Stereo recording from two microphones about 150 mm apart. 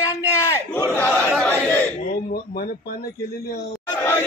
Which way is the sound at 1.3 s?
10° left (ahead or behind).